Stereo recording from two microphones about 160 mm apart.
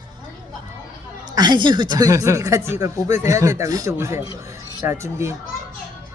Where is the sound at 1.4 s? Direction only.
30° right (ahead or behind).